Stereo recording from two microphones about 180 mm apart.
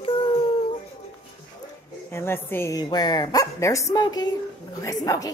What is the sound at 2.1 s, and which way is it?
A woman's voice, 15° left (ahead or behind).